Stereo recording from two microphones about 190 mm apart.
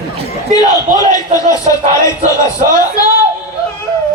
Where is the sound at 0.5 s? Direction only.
20° left (ahead or behind).